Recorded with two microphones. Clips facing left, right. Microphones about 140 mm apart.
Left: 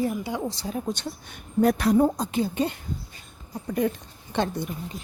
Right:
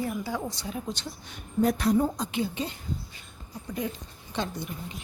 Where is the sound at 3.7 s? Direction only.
55° left (ahead or behind).